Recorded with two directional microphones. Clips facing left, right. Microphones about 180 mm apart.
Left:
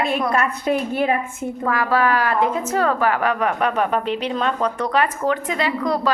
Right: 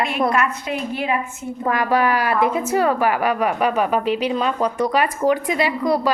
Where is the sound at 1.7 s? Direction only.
15° right (ahead or behind).